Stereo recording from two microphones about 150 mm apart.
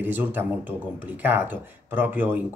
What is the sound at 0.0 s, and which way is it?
Speech, 10° right (ahead or behind).